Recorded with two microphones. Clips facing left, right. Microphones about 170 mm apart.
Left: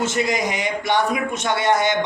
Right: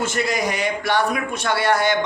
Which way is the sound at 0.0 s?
20° left (ahead or behind).